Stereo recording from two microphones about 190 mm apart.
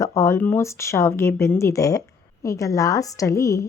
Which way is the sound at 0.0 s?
15° left (ahead or behind).